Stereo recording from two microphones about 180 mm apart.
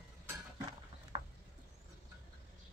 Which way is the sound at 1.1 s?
30° right (ahead or behind).